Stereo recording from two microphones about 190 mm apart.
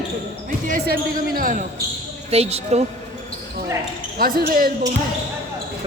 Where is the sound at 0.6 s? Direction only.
45° right (ahead or behind).